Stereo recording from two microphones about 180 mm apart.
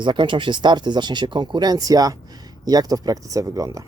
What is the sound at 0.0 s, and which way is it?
Speech, 25° right (ahead or behind).